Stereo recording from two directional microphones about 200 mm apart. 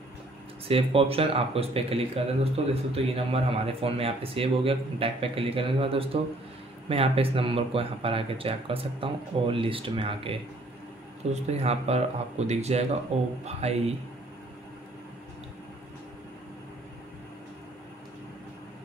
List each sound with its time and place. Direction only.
0.7 s a man's voice: 30° right (ahead or behind)